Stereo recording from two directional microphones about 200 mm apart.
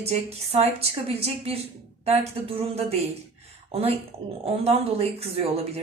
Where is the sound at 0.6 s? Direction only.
30° right (ahead or behind).